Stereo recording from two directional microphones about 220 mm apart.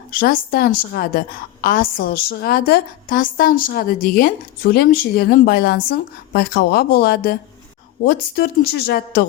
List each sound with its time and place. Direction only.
0.1 s a woman's voice: 40° left (ahead or behind)